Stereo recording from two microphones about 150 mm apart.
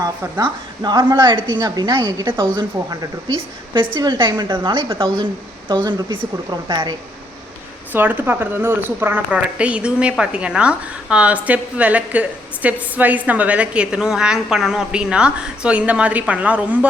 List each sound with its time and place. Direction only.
0.0 s a woman's voice: 25° right (ahead or behind)
7.9 s a woman's voice: 15° right (ahead or behind)